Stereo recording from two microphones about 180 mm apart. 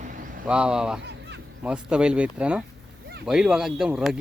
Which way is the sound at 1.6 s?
5° right (ahead or behind).